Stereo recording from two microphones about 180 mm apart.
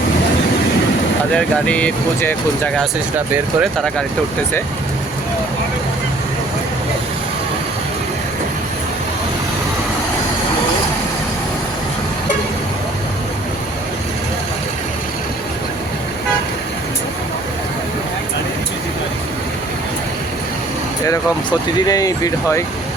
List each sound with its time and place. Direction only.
1.4 s speech: 5° left (ahead or behind)
3.2 s speech: 10° right (ahead or behind)
3.8 s speech: 5° left (ahead or behind)
21.8 s speech: 20° left (ahead or behind)